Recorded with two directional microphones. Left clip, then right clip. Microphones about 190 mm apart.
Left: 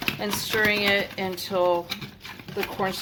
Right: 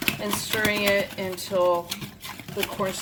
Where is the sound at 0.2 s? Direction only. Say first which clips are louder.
Left 2 dB; 30° left (ahead or behind).